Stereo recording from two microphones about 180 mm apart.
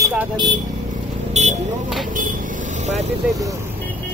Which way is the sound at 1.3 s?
40° right (ahead or behind).